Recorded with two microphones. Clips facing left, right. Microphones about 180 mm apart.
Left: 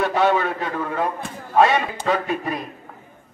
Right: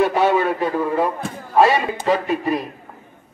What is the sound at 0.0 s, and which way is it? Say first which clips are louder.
Speech: right 2 dB; 15° right (ahead or behind).